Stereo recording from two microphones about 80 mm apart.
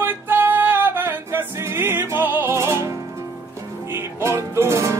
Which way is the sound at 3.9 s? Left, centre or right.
Right.